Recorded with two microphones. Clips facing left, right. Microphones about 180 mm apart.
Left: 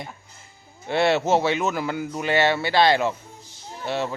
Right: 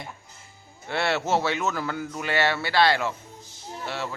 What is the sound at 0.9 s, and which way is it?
Speech, 15° left (ahead or behind).